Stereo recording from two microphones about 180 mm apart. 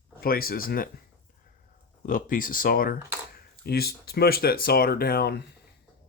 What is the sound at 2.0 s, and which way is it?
Speech, 50° left (ahead or behind).